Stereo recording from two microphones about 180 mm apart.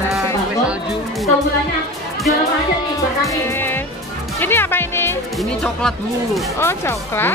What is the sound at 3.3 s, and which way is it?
Speech, 10° left (ahead or behind).